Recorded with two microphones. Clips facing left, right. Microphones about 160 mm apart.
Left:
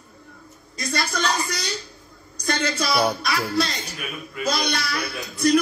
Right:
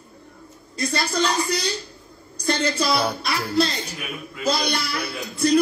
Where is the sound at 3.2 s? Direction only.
30° right (ahead or behind).